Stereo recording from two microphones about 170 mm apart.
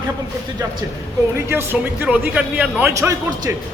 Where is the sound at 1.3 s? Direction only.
15° right (ahead or behind).